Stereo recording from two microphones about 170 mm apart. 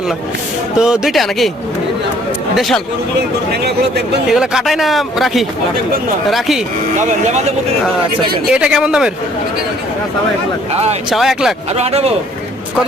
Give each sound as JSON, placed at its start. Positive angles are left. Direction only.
{"t": 0.8, "sound": "speech", "side_deg": -5}
{"t": 2.6, "sound": "speech", "side_deg": 0}
{"t": 4.3, "sound": "speech", "side_deg": -5}
{"t": 8.4, "sound": "speech", "side_deg": -5}
{"t": 10.7, "sound": "speech", "side_deg": -40}
{"t": 11.1, "sound": "speech", "side_deg": 0}
{"t": 11.8, "sound": "speech", "side_deg": -35}